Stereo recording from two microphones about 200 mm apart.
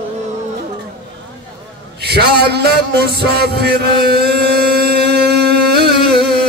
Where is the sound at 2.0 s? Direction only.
55° right (ahead or behind).